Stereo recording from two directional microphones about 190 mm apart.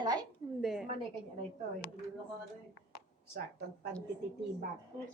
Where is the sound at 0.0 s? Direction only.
20° right (ahead or behind).